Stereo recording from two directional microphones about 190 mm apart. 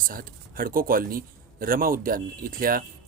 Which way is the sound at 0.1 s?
50° right (ahead or behind).